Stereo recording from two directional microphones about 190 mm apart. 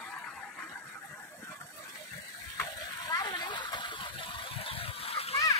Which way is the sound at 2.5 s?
15° left (ahead or behind).